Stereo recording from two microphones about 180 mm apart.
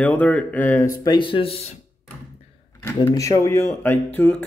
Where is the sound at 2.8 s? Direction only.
15° left (ahead or behind).